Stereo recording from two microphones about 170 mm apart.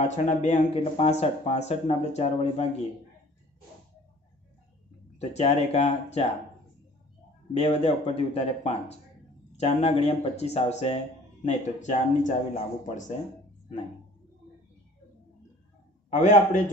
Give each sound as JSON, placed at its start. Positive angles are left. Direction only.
{"t": 0.0, "sound": "speech", "side_deg": 45}
{"t": 5.1, "sound": "speech", "side_deg": 40}
{"t": 7.5, "sound": "a man's voice", "side_deg": 35}
{"t": 16.1, "sound": "a man's voice", "side_deg": 45}